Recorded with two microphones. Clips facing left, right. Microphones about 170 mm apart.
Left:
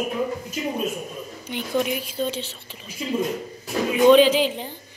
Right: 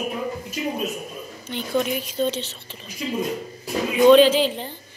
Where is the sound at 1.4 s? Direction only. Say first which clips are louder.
Right 1 dB; 10° left (ahead or behind).